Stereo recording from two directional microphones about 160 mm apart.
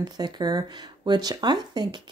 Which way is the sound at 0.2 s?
25° right (ahead or behind).